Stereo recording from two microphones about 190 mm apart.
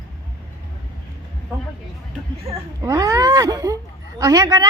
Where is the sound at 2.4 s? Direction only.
15° right (ahead or behind).